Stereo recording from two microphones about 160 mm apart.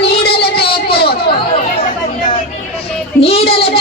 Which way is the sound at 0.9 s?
80° left.